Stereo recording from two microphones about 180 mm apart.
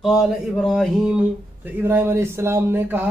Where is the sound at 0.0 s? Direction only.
Centre (ahead or behind).